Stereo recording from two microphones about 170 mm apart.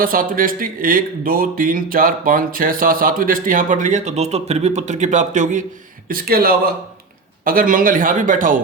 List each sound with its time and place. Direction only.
0.0 s speech: 55° right (ahead or behind)
6.1 s speech: 60° right (ahead or behind)